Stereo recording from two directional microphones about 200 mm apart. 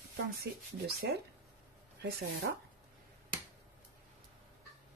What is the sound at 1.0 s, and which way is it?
Speech, 55° right (ahead or behind).